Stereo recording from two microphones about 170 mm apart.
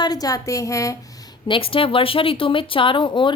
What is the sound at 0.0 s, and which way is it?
Speech, 20° left (ahead or behind).